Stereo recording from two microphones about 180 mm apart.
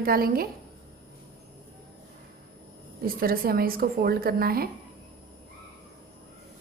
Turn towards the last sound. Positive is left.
turn(degrees=-55)  # may be behind; listen again after turning